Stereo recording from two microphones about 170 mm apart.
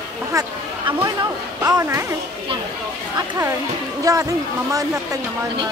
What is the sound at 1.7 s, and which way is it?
Speech, 15° right (ahead or behind).